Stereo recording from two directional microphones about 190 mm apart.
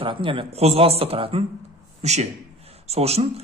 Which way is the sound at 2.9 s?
35° right (ahead or behind).